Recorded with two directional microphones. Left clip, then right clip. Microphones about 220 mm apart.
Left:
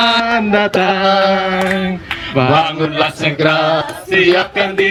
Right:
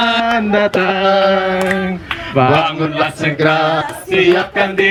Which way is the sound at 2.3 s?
20° left (ahead or behind).